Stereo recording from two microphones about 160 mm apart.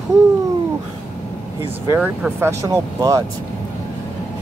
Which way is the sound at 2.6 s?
25° right (ahead or behind).